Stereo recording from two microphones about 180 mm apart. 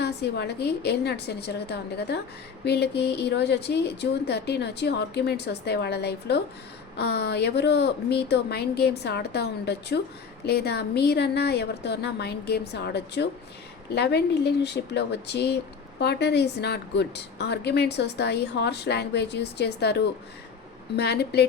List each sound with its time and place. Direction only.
0.0 s a woman's voice: 65° left (ahead or behind)